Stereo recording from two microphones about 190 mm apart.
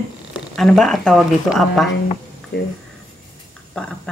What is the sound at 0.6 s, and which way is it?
Speech, centre (ahead or behind).